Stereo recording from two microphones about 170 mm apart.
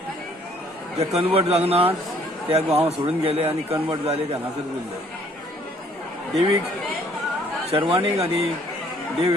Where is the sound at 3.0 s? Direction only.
35° right (ahead or behind).